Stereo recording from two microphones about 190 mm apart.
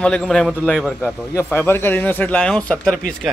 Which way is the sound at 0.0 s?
5° left (ahead or behind).